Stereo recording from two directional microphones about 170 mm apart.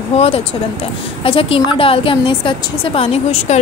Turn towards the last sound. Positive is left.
turn(degrees=40)  # may be behind; listen again after turning